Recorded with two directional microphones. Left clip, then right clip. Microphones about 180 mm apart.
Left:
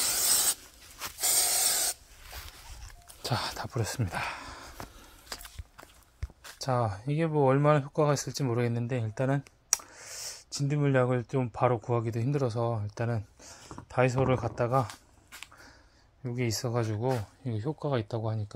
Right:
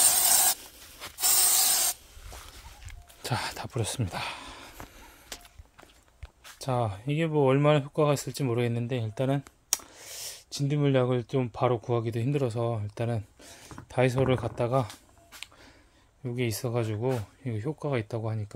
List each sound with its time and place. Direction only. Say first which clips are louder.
0.2 s rub: right 3 dB; 30° right (ahead or behind)
1.0 s spray: left 3 dB; 45° left (ahead or behind)
1.4 s spray: right 3 dB; 35° right (ahead or behind)
3.2 s speech: even; 10° right (ahead or behind)
6.6 s speech: even; 5° right (ahead or behind)
16.3 s speech: right 1 dB; 10° right (ahead or behind)